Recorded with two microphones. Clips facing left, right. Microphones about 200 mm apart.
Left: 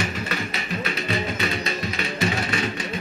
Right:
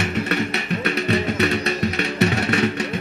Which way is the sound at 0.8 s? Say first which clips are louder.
Right 7 dB; 65° right (ahead or behind).